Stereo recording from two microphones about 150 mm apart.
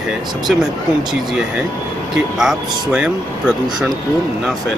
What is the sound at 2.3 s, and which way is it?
Speech, 5° right (ahead or behind).